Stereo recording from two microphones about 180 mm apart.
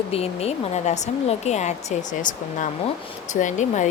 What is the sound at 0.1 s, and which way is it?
Speech, 35° left (ahead or behind).